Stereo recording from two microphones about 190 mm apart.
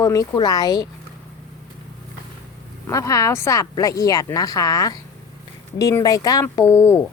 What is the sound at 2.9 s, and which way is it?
Speech, 15° left (ahead or behind).